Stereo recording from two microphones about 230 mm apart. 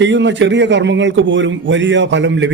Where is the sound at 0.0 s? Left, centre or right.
Right.